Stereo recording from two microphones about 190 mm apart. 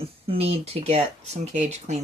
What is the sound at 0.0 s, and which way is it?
Speech, 30° right (ahead or behind).